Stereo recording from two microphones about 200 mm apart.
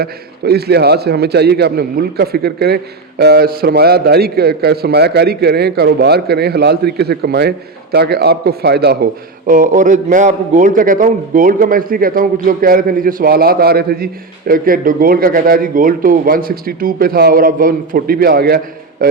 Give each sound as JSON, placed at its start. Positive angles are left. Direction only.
{"t": 0.0, "sound": "a man's voice", "side_deg": -55}
{"t": 9.5, "sound": "a man's voice", "side_deg": -40}